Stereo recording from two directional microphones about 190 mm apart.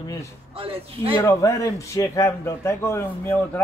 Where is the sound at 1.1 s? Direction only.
15° left (ahead or behind).